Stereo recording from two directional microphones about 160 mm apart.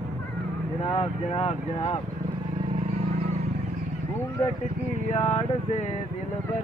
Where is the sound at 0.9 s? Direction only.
35° left (ahead or behind).